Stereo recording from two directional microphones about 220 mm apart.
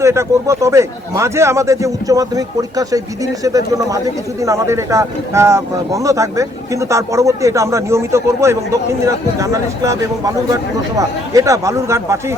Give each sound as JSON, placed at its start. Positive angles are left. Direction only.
{"t": 0.0, "sound": "speech", "side_deg": -15}